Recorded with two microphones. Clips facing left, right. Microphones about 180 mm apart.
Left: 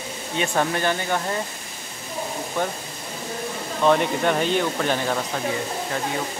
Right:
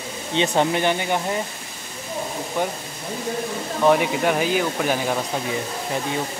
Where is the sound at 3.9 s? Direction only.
5° right (ahead or behind).